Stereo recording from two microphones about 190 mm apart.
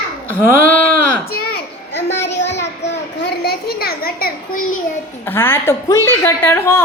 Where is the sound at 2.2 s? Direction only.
65° left (ahead or behind).